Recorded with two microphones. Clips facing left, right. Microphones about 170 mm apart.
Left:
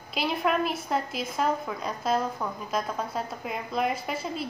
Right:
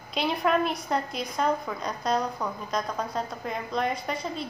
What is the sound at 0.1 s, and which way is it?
A woman's voice, centre (ahead or behind).